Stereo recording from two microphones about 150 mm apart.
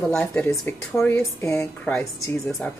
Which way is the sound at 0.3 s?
15° left (ahead or behind).